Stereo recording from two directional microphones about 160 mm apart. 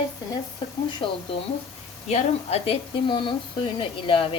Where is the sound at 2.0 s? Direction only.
40° left (ahead or behind).